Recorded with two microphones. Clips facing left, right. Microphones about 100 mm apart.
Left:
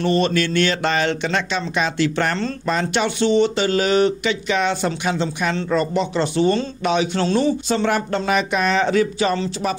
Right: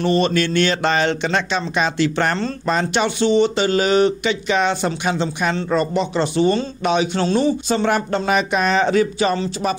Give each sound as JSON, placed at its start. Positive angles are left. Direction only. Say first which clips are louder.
{"t": 0.0, "sound": "speech", "louder": "right 1 dB", "side_deg": -20}